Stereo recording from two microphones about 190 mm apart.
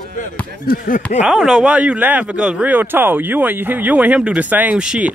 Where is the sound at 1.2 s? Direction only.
5° right (ahead or behind).